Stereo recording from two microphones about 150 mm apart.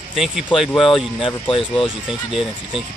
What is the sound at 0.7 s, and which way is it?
Speech, 35° left (ahead or behind).